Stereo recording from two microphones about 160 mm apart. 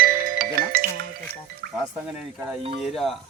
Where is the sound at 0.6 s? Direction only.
65° right (ahead or behind).